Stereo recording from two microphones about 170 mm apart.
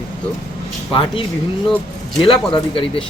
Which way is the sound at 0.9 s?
30° left (ahead or behind).